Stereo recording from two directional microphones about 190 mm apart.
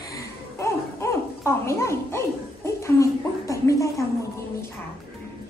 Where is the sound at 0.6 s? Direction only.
15° left (ahead or behind).